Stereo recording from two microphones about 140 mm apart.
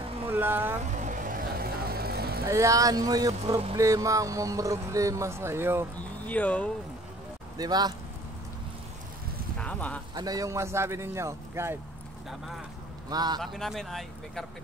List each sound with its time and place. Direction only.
0.3 s speech: 15° right (ahead or behind)
0.9 s vehicle: 65° right (ahead or behind); by 2.4 s 90° right
2.4 s speech: 20° right (ahead or behind)
3.4 s speech: 40° right (ahead or behind)
3.7 s speech: 20° right (ahead or behind)
5.9 s speech: 10° left (ahead or behind)
7.5 s speech: 30° right (ahead or behind)
9.6 s a sound: 10° left (ahead or behind)
10.1 s speech: 25° right (ahead or behind)
13.1 s speech: 30° right (ahead or behind)
13.4 s speech: centre (ahead or behind)